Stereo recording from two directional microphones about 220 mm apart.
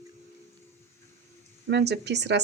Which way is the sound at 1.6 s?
50° right (ahead or behind).